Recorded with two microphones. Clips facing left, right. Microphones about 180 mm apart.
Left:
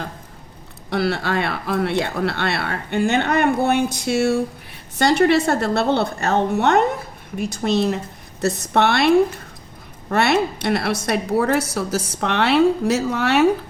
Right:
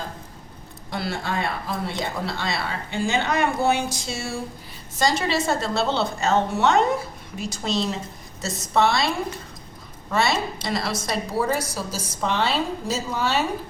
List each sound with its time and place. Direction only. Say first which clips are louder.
0.9 s a woman's voice: left 7 dB; 70° left (ahead or behind)